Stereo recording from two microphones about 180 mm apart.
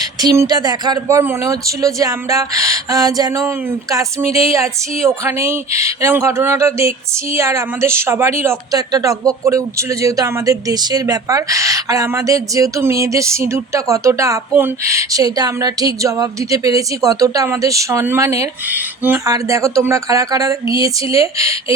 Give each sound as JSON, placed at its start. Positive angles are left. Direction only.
{"t": 0.0, "sound": "speech", "side_deg": -20}
{"t": 4.2, "sound": "a sound", "side_deg": 35}
{"t": 4.4, "sound": "speech", "side_deg": -15}